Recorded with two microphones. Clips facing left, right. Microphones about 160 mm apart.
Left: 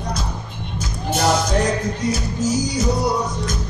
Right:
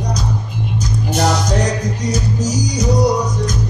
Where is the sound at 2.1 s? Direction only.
40° right (ahead or behind).